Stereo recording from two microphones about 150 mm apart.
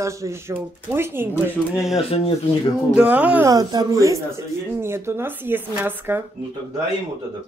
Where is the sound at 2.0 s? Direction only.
40° left (ahead or behind).